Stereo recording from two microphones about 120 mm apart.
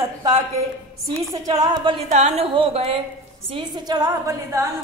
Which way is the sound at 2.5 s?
50° right (ahead or behind).